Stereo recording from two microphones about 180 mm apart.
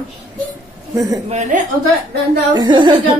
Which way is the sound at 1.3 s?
40° right (ahead or behind).